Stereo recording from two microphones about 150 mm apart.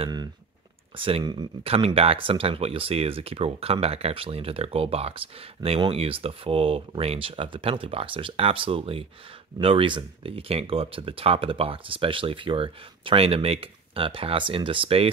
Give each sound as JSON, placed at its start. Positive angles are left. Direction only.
{"t": 0.9, "sound": "speech", "side_deg": -35}